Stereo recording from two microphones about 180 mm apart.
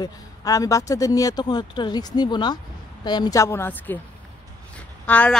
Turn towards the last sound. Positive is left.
turn(degrees=10)  # may be behind; listen again after turning